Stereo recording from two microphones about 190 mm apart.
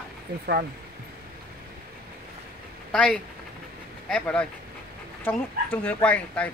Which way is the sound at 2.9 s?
5° left (ahead or behind).